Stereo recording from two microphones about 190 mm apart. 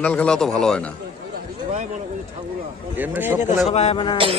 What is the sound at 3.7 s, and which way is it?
Speech, 35° left (ahead or behind).